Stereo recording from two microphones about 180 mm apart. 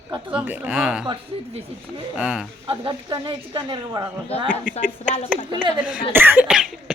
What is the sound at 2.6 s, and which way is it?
Speech, 30° right (ahead or behind).